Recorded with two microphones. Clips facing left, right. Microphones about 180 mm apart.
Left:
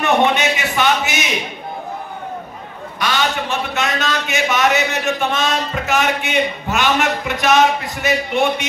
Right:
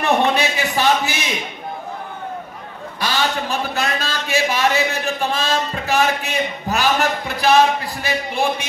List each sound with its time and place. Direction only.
0.0 s a man's voice: 35° right (ahead or behind)
3.0 s a man's voice: 30° right (ahead or behind)